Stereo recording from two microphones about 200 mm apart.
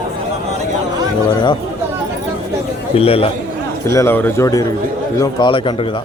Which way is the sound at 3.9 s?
15° left (ahead or behind).